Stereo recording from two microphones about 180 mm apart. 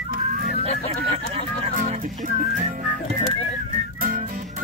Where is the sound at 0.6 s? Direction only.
35° right (ahead or behind).